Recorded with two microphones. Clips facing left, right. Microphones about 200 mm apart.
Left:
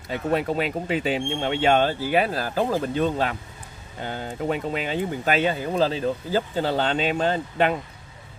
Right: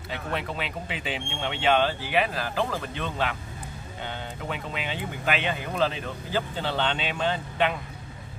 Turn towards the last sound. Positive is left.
turn(degrees=40)  # may be behind; listen again after turning